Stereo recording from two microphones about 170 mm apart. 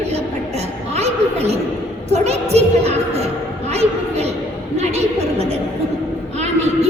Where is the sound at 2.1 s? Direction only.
40° right (ahead or behind).